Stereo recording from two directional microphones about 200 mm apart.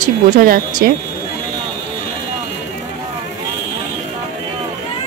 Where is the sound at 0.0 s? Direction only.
45° right (ahead or behind).